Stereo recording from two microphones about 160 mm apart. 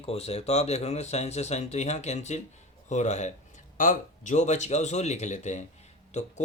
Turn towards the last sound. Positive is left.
turn(degrees=45)  # may be behind; listen again after turning